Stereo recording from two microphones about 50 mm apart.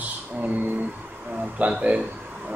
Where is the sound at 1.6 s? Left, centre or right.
Right.